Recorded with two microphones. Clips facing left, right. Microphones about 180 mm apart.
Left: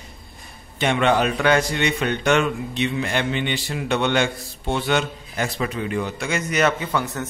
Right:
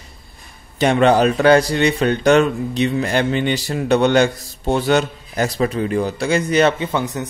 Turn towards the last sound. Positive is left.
turn(degrees=-20)  # may be behind; listen again after turning